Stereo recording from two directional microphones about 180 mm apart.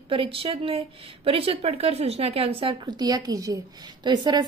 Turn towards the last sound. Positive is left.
turn(degrees=-25)  # may be behind; listen again after turning